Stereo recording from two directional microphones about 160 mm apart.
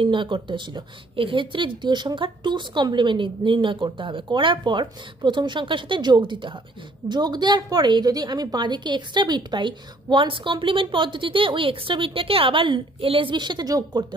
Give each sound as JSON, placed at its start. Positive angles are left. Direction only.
{"t": 0.0, "sound": "a woman's voice", "side_deg": -30}